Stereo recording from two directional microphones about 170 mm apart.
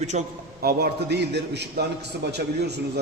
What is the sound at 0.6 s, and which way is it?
A man's voice, 60° right (ahead or behind).